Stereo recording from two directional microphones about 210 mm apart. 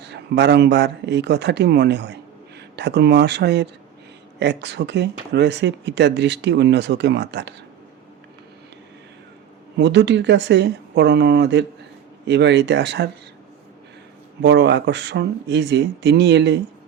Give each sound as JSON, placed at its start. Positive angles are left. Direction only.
{"t": 0.0, "sound": "speech", "side_deg": -55}
{"t": 9.7, "sound": "speech", "side_deg": -55}
{"t": 14.4, "sound": "speech", "side_deg": -55}